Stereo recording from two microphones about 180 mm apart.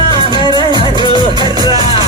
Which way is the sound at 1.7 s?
20° right (ahead or behind).